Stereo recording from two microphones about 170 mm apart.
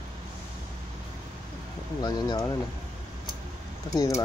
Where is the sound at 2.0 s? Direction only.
25° left (ahead or behind).